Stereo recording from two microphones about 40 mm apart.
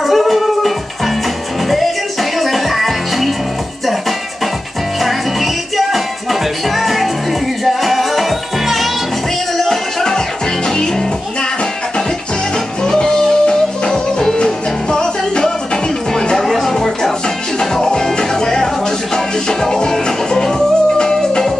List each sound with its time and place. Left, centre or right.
0.0 s music: centre
2.3 s music: centre
5.0 s music: centre
12.8 s music: centre
16.4 s music: centre